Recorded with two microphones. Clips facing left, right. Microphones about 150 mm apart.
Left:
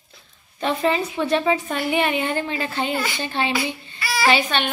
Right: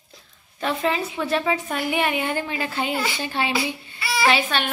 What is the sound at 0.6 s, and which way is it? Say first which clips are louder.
A woman's voice: left 2 dB; centre (ahead or behind).